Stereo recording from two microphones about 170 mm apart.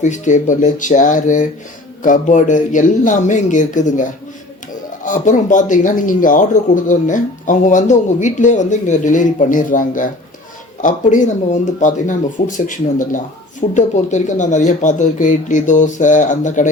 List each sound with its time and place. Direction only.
0.0 s speech: 45° left (ahead or behind)